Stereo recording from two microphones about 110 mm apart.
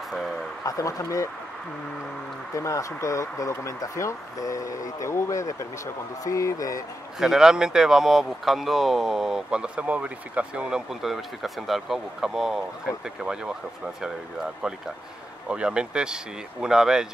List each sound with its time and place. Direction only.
0.7 s speech: 30° left (ahead or behind)
2.5 s speech: 25° left (ahead or behind)
7.2 s speech: 5° right (ahead or behind)